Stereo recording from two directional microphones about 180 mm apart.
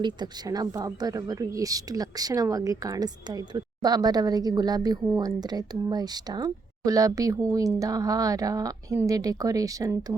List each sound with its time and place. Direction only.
0.0 s speech: 25° right (ahead or behind)